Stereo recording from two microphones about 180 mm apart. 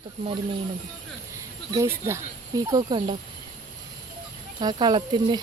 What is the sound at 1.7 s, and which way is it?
Speech, 20° right (ahead or behind).